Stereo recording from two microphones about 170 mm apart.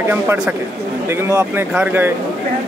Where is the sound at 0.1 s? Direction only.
10° right (ahead or behind).